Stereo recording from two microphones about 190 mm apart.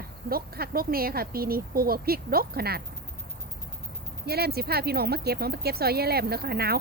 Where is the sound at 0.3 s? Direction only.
50° right (ahead or behind).